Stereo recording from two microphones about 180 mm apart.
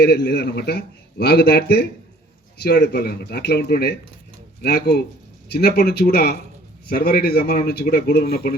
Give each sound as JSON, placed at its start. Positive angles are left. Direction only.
{"t": 0.0, "sound": "a man's voice", "side_deg": 65}